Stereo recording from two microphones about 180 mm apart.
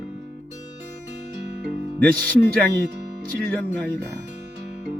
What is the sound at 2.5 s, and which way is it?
Speech, 55° right (ahead or behind).